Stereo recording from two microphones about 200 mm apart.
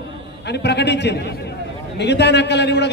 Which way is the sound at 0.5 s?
55° left (ahead or behind).